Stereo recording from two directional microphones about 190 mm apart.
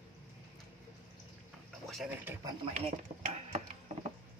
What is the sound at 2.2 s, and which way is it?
Speech, 10° right (ahead or behind).